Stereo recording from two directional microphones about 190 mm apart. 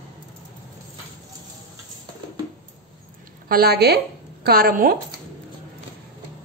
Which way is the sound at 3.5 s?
55° right (ahead or behind).